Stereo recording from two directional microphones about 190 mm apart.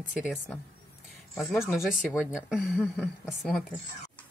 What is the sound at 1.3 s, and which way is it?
Speech, 10° left (ahead or behind).